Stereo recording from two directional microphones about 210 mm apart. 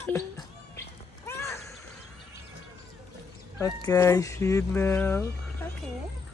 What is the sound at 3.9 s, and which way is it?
Speech, 15° left (ahead or behind).